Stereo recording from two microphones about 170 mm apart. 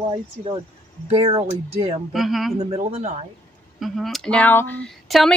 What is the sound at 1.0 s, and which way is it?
Speech, 35° right (ahead or behind).